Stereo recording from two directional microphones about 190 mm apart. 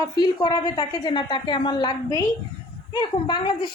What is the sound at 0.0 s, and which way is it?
A woman's voice, 25° left (ahead or behind).